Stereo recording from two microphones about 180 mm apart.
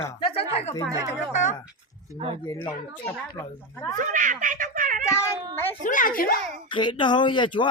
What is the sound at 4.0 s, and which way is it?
Speech, 45° right (ahead or behind).